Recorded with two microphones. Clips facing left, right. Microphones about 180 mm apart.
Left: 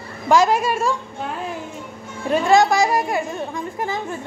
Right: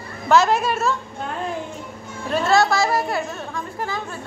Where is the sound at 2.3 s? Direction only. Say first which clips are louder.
Left 3 dB; 15° left (ahead or behind).